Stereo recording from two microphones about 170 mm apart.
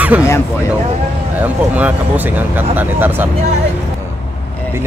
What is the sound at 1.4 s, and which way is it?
Speech, 10° right (ahead or behind).